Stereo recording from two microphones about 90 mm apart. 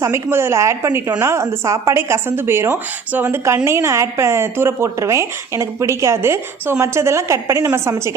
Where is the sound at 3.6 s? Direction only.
30° right (ahead or behind).